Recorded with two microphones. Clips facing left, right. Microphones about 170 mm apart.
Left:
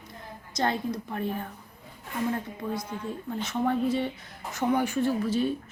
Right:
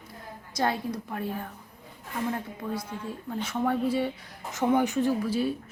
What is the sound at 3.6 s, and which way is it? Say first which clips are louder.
Speech: even; 5° right (ahead or behind).